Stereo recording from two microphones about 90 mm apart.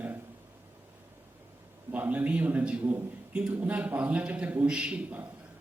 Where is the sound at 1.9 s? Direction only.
15° right (ahead or behind).